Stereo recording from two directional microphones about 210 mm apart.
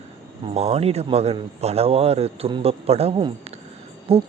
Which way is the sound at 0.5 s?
30° right (ahead or behind).